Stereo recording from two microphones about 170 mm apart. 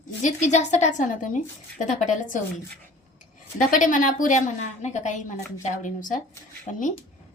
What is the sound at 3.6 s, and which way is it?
A woman's voice, 50° left (ahead or behind).